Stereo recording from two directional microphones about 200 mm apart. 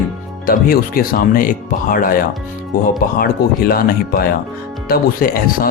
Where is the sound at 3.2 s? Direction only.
50° left (ahead or behind).